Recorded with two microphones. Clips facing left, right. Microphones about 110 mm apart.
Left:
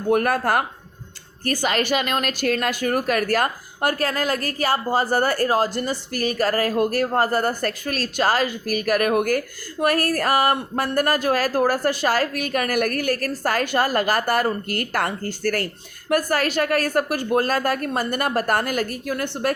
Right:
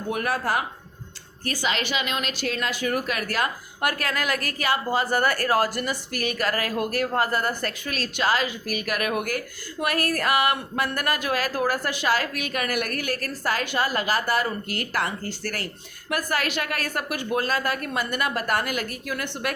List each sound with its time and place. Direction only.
0.1 s a woman's voice: 50° left (ahead or behind)
3.8 s a woman's voice: 30° left (ahead or behind)